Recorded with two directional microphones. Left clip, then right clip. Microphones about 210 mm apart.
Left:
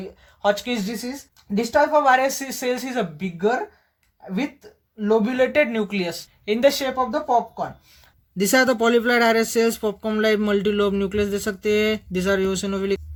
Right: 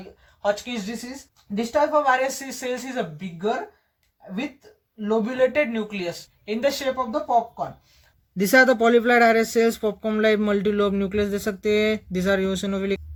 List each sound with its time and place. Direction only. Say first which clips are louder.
0.4 s speech: left 3 dB; 50° left (ahead or behind)
4.9 s speech: left 2 dB; 45° left (ahead or behind)
8.4 s speech: right 2 dB; 5° left (ahead or behind)